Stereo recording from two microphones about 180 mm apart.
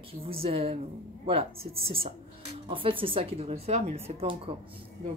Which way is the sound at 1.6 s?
55° right (ahead or behind).